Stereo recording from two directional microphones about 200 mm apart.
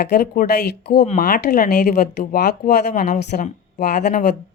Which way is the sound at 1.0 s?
35° left (ahead or behind).